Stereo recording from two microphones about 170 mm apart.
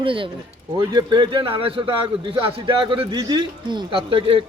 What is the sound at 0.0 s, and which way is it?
A man's voice, 30° right (ahead or behind).